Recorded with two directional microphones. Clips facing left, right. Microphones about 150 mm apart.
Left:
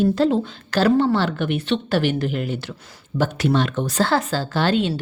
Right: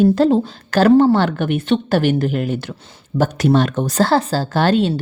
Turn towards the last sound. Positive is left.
turn(degrees=-40)  # may be behind; listen again after turning